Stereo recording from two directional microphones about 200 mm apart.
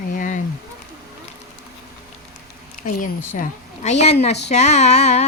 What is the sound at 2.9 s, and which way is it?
A woman's voice, 40° left (ahead or behind).